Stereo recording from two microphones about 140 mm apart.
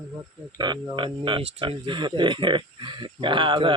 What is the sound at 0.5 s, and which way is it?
Speech, 30° right (ahead or behind).